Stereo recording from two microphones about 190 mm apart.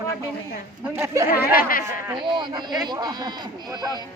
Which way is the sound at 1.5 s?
50° left (ahead or behind).